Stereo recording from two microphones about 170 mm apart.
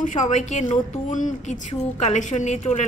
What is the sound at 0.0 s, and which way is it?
A woman's voice, 45° left (ahead or behind).